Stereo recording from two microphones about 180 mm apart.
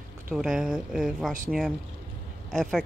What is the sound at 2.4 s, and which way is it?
Speech, centre (ahead or behind).